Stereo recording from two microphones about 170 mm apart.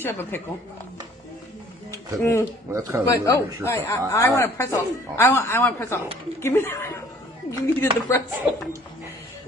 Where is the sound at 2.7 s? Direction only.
20° right (ahead or behind).